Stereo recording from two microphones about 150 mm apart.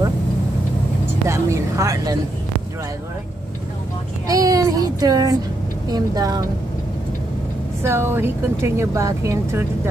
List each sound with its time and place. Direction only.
1.3 s speech: 20° right (ahead or behind)
4.3 s a child's voice: 25° right (ahead or behind)
7.8 s a woman's voice: 15° right (ahead or behind)